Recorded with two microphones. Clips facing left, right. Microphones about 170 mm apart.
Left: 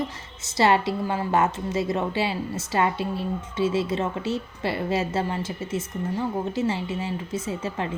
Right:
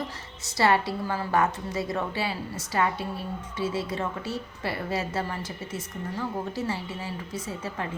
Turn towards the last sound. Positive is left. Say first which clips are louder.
# left 4 dB
turn(degrees=25)  # may be behind; listen again after turning